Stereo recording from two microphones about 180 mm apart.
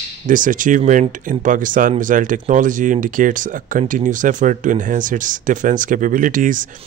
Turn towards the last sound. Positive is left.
turn(degrees=-45)  # may be behind; listen again after turning